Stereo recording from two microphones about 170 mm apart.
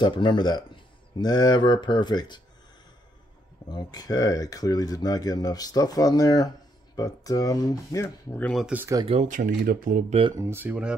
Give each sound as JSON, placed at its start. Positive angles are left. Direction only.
{"t": 0.0, "sound": "speech", "side_deg": 25}
{"t": 3.6, "sound": "speech", "side_deg": 25}
{"t": 8.6, "sound": "speech", "side_deg": -15}
{"t": 9.0, "sound": "speech", "side_deg": -40}
{"t": 10.3, "sound": "speech", "side_deg": -15}